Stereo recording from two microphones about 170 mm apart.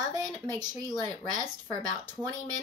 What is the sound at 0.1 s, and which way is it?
Speech, 20° right (ahead or behind).